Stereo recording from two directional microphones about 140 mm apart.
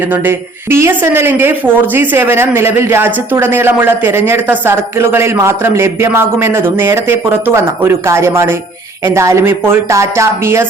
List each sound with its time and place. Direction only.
0.1 s speech: 15° right (ahead or behind)